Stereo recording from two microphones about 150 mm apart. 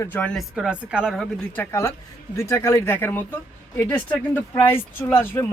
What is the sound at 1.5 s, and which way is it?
Speech, 20° left (ahead or behind).